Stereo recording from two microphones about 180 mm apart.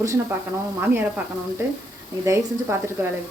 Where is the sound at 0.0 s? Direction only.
15° right (ahead or behind).